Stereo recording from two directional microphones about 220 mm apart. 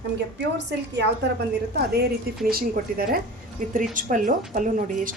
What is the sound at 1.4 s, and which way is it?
A woman's voice, 45° right (ahead or behind).